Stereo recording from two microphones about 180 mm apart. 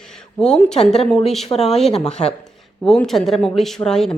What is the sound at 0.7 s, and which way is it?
Speech, 35° left (ahead or behind).